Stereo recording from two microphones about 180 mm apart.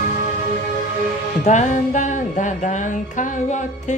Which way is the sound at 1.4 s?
40° left (ahead or behind).